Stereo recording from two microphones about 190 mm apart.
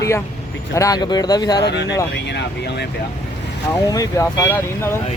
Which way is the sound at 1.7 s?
65° left (ahead or behind).